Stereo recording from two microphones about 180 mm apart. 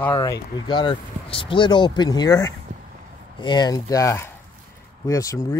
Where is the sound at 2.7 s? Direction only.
40° right (ahead or behind).